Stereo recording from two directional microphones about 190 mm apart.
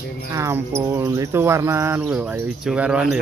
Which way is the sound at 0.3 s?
15° right (ahead or behind).